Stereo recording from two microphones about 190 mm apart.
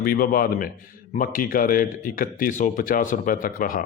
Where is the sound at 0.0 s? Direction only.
50° left (ahead or behind).